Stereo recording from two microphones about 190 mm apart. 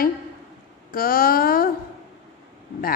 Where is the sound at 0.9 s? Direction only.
50° left (ahead or behind).